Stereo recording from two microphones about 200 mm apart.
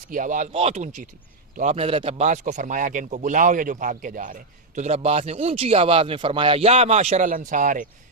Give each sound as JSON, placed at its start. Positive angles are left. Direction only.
{"t": 0.1, "sound": "a man's voice", "side_deg": -40}